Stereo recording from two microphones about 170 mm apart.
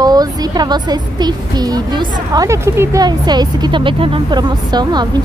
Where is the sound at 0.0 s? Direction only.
20° right (ahead or behind).